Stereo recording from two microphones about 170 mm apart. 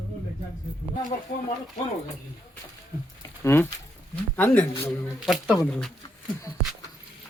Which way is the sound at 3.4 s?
15° left (ahead or behind).